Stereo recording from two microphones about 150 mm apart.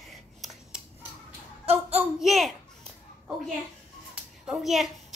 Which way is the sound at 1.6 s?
45° right (ahead or behind).